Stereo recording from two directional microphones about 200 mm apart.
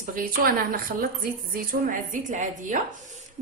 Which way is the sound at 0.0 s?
45° right (ahead or behind).